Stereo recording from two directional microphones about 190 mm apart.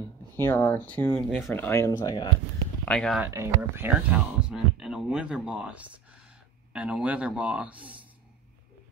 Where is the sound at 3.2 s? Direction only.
15° right (ahead or behind).